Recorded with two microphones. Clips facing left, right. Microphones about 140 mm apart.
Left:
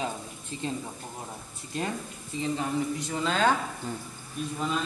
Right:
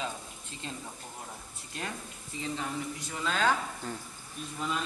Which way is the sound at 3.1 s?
25° left (ahead or behind).